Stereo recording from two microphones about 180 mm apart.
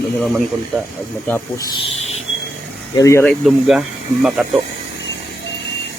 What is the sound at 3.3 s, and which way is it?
Speech, centre (ahead or behind).